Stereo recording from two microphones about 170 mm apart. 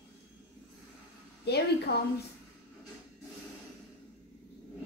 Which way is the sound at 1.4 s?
75° left (ahead or behind).